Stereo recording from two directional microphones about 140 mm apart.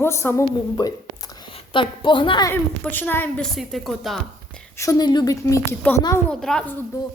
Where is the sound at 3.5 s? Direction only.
Centre (ahead or behind).